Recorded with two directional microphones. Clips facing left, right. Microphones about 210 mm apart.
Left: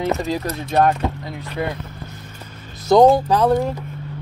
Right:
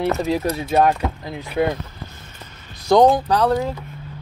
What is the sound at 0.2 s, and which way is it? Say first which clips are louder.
Speech: right 3 dB; 5° right (ahead or behind).